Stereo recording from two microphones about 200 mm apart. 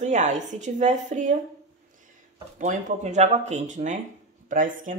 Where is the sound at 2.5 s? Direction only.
35° right (ahead or behind).